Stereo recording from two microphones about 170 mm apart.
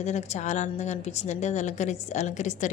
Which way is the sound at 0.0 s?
40° left (ahead or behind).